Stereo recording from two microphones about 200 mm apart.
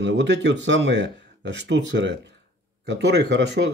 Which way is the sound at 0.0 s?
60° right (ahead or behind).